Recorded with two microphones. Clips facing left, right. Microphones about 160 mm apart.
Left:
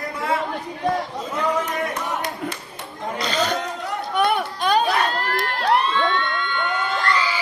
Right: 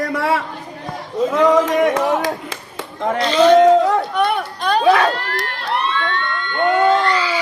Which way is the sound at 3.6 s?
90° right.